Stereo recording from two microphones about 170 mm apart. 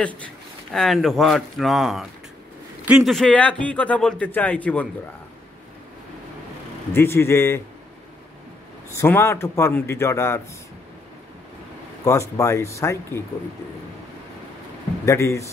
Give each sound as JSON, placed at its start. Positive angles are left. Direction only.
{"t": 0.7, "sound": "speech", "side_deg": 0}
{"t": 2.8, "sound": "a man's voice", "side_deg": -10}
{"t": 3.1, "sound": "a man's voice", "side_deg": 5}
{"t": 6.9, "sound": "a man's voice", "side_deg": 15}
{"t": 8.9, "sound": "a man's voice", "side_deg": 15}
{"t": 12.0, "sound": "a man's voice", "side_deg": 20}
{"t": 15.0, "sound": "a man's voice", "side_deg": 15}